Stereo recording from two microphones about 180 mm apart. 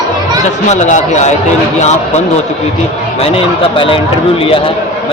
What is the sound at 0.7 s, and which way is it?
Speech, 40° left (ahead or behind).